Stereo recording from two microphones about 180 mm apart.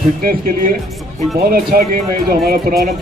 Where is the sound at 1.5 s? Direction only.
60° right (ahead or behind).